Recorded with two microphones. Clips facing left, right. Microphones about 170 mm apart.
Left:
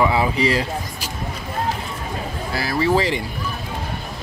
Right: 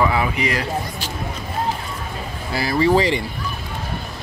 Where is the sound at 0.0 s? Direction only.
20° left (ahead or behind).